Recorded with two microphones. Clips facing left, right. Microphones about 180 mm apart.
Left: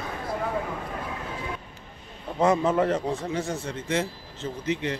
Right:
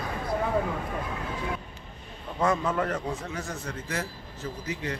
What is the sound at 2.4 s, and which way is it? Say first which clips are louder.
A man's voice: left 5 dB; 25° left (ahead or behind).